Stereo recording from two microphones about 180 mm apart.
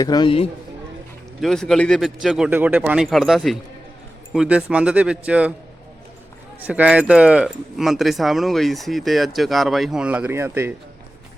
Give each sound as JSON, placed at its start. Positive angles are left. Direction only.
{"t": 0.0, "sound": "a man's voice", "side_deg": 25}
{"t": 1.4, "sound": "a man's voice", "side_deg": 0}
{"t": 6.6, "sound": "speech", "side_deg": -10}